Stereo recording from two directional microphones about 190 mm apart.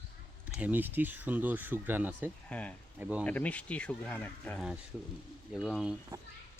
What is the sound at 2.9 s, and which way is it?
Speech, 10° right (ahead or behind).